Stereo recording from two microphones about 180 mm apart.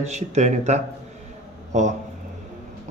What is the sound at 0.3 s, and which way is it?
A man's voice, 40° right (ahead or behind).